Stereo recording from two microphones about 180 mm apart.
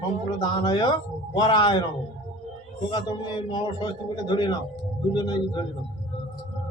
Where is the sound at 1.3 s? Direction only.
25° left (ahead or behind).